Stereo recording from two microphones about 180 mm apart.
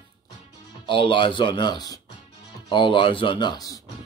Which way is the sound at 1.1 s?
30° left (ahead or behind).